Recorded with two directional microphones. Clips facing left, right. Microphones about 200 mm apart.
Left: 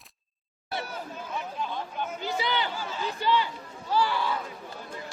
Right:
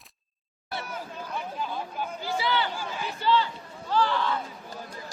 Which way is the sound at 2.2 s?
20° left (ahead or behind).